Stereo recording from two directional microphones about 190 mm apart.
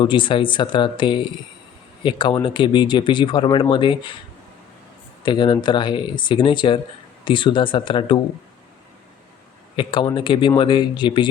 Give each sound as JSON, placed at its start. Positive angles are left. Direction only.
{"t": 0.0, "sound": "speech", "side_deg": 25}
{"t": 5.2, "sound": "speech", "side_deg": 25}
{"t": 9.7, "sound": "speech", "side_deg": 25}